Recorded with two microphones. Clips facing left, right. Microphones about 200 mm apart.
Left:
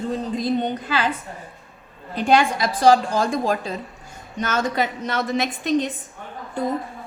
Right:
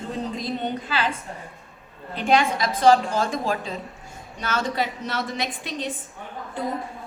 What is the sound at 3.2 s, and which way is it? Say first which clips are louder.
A woman's voice: left 3 dB; 40° left (ahead or behind).